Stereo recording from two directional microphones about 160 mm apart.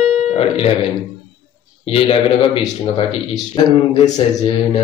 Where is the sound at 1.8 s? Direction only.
35° left (ahead or behind).